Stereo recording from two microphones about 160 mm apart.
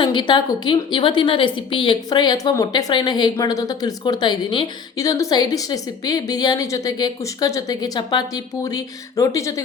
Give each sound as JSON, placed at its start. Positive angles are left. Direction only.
{"t": 0.0, "sound": "a woman's voice", "side_deg": 30}